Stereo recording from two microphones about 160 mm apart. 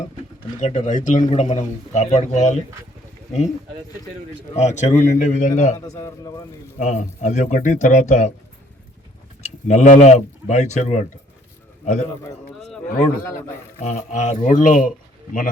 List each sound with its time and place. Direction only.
0.6 s a man's voice: 45° left (ahead or behind)
4.5 s a man's voice: 45° left (ahead or behind)
5.7 s a man's voice: 20° left (ahead or behind)
6.7 s a man's voice: 50° left (ahead or behind)
9.4 s speech: 45° left (ahead or behind)
12.9 s a man's voice: 60° left (ahead or behind)
13.7 s a man's voice: 45° left (ahead or behind)